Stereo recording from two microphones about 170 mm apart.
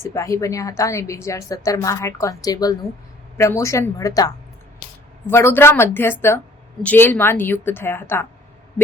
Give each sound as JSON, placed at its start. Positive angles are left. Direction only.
{"t": 0.0, "sound": "a woman's voice", "side_deg": 15}
{"t": 5.3, "sound": "a woman's voice", "side_deg": 15}